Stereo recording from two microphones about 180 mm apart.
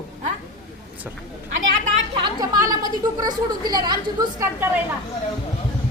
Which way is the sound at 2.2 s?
20° right (ahead or behind).